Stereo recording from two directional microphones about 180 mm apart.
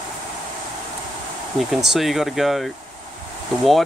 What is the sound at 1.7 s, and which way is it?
Speech, centre (ahead or behind).